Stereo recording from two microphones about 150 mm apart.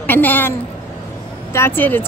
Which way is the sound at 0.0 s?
15° left (ahead or behind).